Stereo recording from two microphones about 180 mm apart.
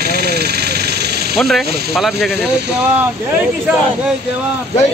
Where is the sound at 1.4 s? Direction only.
Centre (ahead or behind).